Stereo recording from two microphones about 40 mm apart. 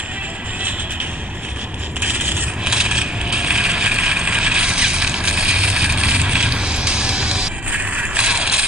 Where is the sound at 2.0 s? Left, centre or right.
Right.